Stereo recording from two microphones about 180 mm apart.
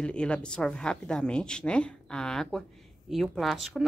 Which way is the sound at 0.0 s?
5° left (ahead or behind).